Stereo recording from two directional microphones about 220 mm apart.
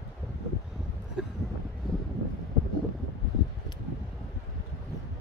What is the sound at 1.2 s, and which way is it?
Vehicle, 5° right (ahead or behind).